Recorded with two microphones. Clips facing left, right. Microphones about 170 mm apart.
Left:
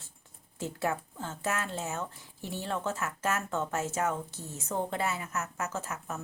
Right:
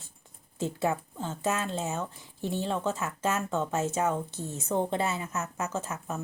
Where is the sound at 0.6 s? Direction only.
20° right (ahead or behind).